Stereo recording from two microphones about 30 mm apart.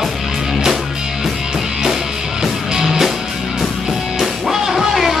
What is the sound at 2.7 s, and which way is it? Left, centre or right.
Music, centre.